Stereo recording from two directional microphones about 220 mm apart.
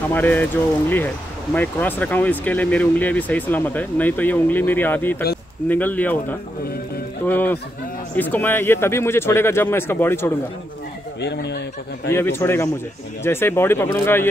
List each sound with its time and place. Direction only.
0.1 s speech: 10° left (ahead or behind)
7.2 s speech: 10° left (ahead or behind)
11.1 s speech: 50° left (ahead or behind)
12.1 s speech: 10° left (ahead or behind)